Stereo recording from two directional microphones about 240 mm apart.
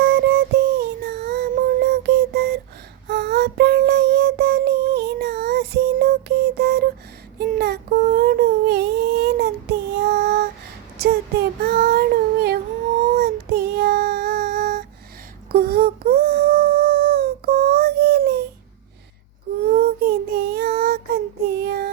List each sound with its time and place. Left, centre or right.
0.0 s music: right
3.1 s a sound: right
7.9 s humming: right
10.9 s child singing: right
15.5 s humming: right
19.7 s child singing: right